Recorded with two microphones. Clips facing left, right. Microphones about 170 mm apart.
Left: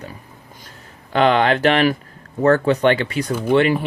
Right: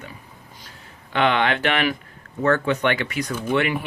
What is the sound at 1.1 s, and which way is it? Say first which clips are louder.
Speech: left 5 dB; 40° left (ahead or behind).